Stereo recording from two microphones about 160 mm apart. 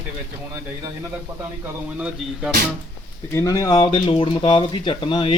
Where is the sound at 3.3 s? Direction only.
20° left (ahead or behind).